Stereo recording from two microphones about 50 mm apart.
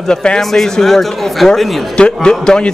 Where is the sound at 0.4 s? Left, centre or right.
Centre.